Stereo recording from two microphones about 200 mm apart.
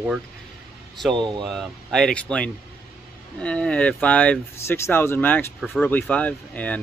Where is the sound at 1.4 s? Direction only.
Centre (ahead or behind).